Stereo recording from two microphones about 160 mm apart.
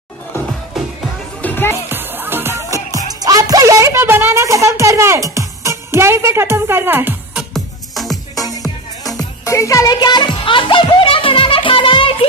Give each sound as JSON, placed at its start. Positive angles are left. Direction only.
{"t": 0.8, "sound": "music", "side_deg": 0}
{"t": 1.4, "sound": "music", "side_deg": 15}
{"t": 1.9, "sound": "music", "side_deg": -10}
{"t": 7.5, "sound": "music", "side_deg": 0}
{"t": 8.4, "sound": "music", "side_deg": 20}